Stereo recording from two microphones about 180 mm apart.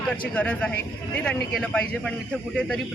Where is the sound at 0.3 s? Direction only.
5° left (ahead or behind).